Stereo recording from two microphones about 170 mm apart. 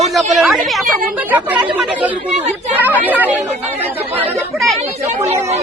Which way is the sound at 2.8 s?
10° right (ahead or behind).